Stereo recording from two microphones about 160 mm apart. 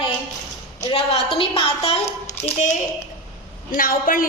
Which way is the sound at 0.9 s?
35° left (ahead or behind).